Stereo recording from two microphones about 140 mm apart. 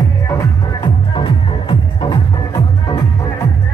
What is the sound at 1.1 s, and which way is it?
Music, 35° left (ahead or behind).